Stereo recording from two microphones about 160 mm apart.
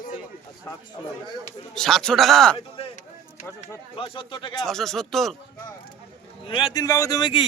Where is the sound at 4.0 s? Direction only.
30° left (ahead or behind).